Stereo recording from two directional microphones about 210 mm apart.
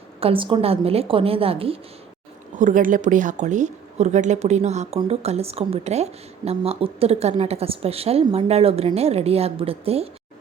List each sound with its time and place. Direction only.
0.2 s a woman's voice: 25° right (ahead or behind)
2.6 s a woman's voice: 40° right (ahead or behind)